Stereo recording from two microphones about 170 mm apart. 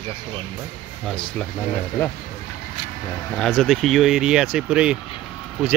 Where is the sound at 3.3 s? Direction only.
5° left (ahead or behind).